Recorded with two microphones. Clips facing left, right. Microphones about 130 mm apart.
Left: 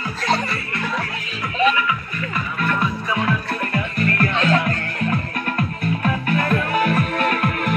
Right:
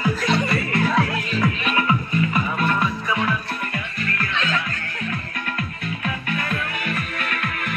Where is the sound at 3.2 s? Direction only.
45° left (ahead or behind).